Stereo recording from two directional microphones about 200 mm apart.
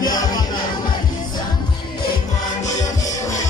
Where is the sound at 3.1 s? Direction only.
15° left (ahead or behind).